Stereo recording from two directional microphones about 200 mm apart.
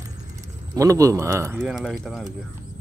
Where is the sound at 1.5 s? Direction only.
Centre (ahead or behind).